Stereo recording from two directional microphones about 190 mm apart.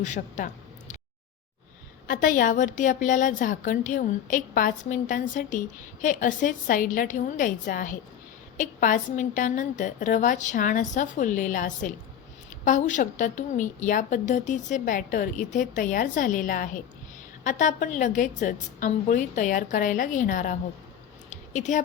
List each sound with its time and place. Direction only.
0.0 s speech: 40° left (ahead or behind)
2.0 s a woman's voice: 45° left (ahead or behind)
21.2 s a sound: 40° left (ahead or behind)